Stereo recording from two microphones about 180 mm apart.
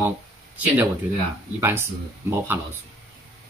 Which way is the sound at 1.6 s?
15° right (ahead or behind).